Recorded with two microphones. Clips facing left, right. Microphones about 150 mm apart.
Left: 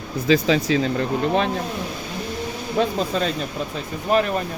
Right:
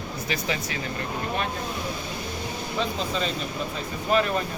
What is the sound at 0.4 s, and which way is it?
Speech, 90° left.